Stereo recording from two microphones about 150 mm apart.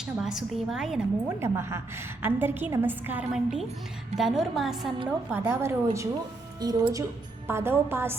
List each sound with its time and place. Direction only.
0.0 s a woman's voice: 5° right (ahead or behind)
1.4 s a woman's voice: 15° right (ahead or behind)
5.3 s a woman's voice: 15° right (ahead or behind)